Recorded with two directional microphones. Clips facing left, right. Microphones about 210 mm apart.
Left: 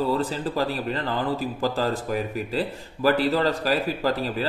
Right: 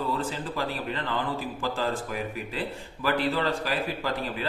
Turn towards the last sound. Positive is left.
turn(degrees=40)  # may be behind; listen again after turning